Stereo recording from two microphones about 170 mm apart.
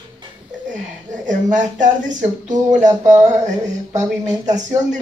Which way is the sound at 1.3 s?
50° right (ahead or behind).